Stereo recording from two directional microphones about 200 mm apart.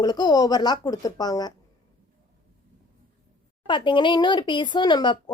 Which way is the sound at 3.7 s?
25° left (ahead or behind).